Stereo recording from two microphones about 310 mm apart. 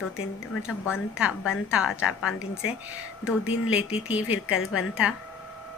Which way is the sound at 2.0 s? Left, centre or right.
Left.